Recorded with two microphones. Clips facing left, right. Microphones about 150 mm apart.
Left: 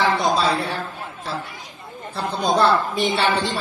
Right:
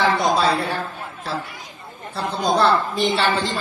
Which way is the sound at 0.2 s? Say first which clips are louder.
Right 1 dB; centre (ahead or behind).